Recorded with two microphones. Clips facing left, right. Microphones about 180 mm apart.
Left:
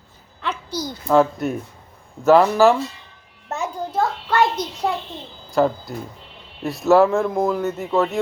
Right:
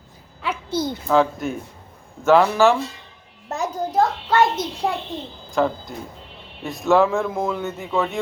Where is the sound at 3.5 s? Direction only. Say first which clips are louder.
Right 1 dB; 35° right (ahead or behind).